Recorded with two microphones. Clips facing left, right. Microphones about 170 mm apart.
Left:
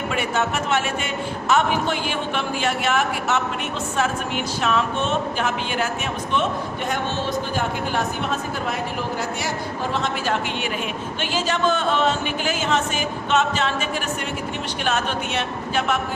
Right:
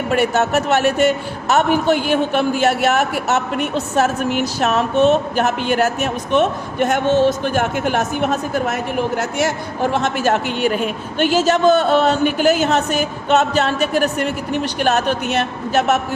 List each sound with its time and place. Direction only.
0.1 s speech: 40° right (ahead or behind)
4.6 s speech: 45° right (ahead or behind)
6.3 s a woman's voice: 60° right (ahead or behind)
11.4 s speech: 40° right (ahead or behind)